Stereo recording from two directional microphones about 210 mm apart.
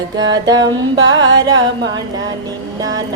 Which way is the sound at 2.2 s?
20° right (ahead or behind).